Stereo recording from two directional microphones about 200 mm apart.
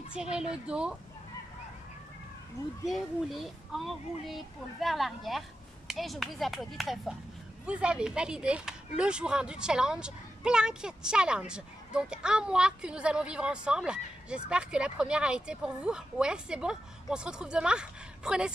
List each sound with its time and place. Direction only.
0.1 s speech: 5° right (ahead or behind)
2.8 s speech: centre (ahead or behind)